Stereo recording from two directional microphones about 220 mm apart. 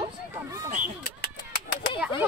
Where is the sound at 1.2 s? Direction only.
45° left (ahead or behind).